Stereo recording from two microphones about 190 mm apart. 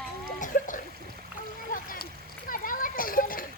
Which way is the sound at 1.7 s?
45° left (ahead or behind).